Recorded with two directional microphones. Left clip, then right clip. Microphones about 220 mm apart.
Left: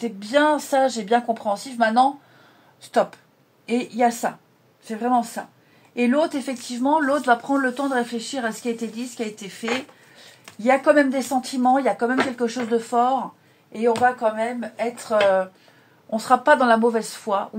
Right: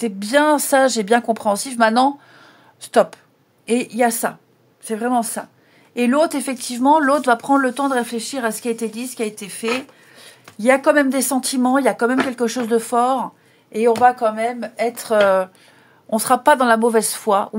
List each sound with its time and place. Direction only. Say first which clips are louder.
0.0 s a woman's voice: right 3 dB; 45° right (ahead or behind)